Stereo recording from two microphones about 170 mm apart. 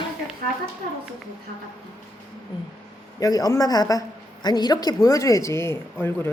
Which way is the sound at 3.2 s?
20° left (ahead or behind).